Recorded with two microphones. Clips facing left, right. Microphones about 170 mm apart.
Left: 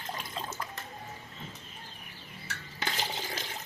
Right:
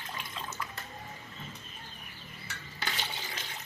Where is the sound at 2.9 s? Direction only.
35° left (ahead or behind).